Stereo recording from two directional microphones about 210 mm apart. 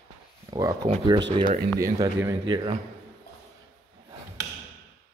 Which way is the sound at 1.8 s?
15° right (ahead or behind).